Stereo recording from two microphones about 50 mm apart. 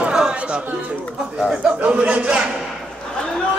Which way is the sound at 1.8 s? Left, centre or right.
Right.